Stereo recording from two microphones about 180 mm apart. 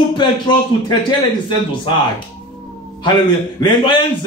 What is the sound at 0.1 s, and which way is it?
Speech, 25° left (ahead or behind).